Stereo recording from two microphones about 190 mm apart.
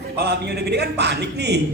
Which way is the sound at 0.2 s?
60° right (ahead or behind).